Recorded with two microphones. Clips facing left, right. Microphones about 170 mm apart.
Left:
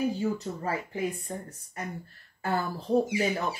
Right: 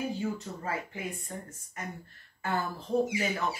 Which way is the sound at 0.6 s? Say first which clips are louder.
Left 5 dB; 35° left (ahead or behind).